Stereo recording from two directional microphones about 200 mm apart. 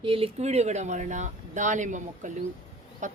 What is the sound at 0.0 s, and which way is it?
Speech, 30° right (ahead or behind).